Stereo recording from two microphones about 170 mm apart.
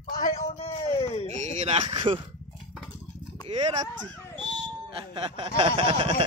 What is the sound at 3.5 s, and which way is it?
Chuckle, 40° right (ahead or behind).